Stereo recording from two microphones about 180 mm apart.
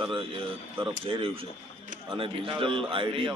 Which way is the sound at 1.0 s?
30° right (ahead or behind).